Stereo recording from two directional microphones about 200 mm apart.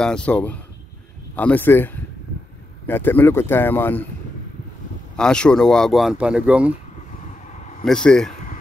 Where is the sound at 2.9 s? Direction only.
10° left (ahead or behind).